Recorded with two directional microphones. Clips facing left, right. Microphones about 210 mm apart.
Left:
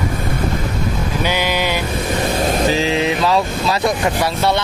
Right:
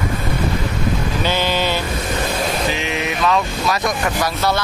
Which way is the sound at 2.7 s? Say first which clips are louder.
Left 6 dB; 30° left (ahead or behind).